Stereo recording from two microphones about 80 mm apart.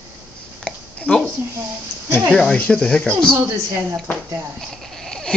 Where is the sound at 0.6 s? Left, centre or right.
Centre.